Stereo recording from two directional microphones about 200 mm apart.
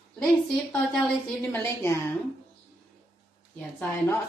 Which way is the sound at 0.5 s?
5° left (ahead or behind).